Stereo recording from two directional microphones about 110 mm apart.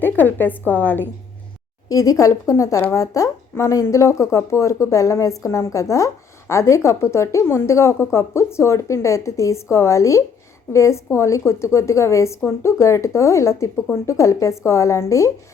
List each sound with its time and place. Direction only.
0.0 s a woman's voice: 15° left (ahead or behind)
1.9 s speech: 30° left (ahead or behind)